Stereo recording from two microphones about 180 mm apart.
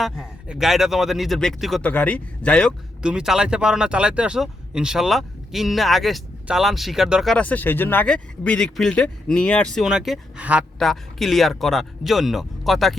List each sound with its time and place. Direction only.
0.0 s speech: 5° right (ahead or behind)
3.0 s speech: 5° right (ahead or behind)